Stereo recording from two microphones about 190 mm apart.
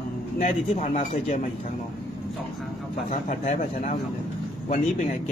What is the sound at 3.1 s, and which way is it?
A man's voice, 40° left (ahead or behind).